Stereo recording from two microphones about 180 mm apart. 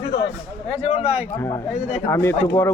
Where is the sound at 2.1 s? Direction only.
15° left (ahead or behind).